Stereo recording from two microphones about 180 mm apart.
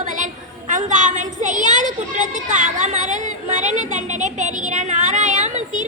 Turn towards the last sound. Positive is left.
turn(degrees=-40)  # may be behind; listen again after turning